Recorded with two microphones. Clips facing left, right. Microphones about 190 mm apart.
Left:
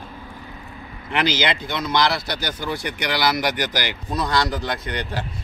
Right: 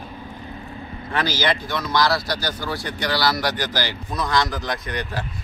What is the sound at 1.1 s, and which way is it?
Speech, 20° left (ahead or behind).